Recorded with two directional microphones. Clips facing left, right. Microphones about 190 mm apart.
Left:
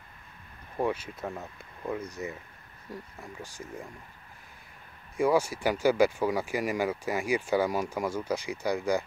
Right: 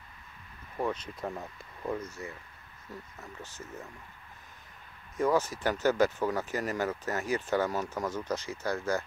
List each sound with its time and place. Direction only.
0.7 s speech: 10° left (ahead or behind)
2.0 s speech: 20° left (ahead or behind)
5.1 s speech: 10° left (ahead or behind)